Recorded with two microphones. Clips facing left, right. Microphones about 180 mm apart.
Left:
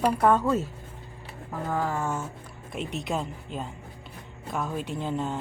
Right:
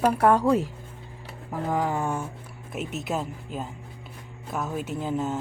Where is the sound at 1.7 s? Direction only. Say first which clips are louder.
Right 2 dB; 15° right (ahead or behind).